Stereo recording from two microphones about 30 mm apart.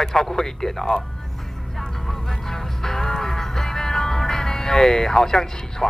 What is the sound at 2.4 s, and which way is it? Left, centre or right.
Music, centre.